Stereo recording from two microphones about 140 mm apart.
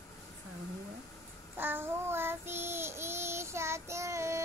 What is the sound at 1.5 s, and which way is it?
Child singing, 15° right (ahead or behind).